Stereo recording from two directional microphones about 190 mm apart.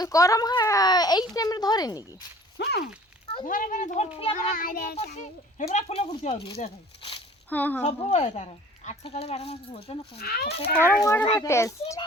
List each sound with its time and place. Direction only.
0.0 s a child's voice: 15° left (ahead or behind)
2.6 s speech: 60° left (ahead or behind)
3.4 s speech: 45° left (ahead or behind)
4.4 s child singing: 50° left (ahead or behind)
5.5 s speech: 35° left (ahead or behind)
7.5 s a child's voice: 10° left (ahead or behind)
7.9 s speech: 35° left (ahead or behind)
10.2 s speech: 55° left (ahead or behind)
10.8 s a child's voice: 15° left (ahead or behind)